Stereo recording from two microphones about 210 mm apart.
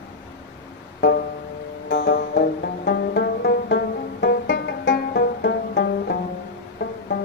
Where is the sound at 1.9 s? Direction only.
65° left (ahead or behind).